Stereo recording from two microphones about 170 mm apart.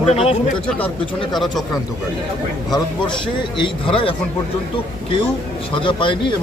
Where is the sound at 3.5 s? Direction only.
30° left (ahead or behind).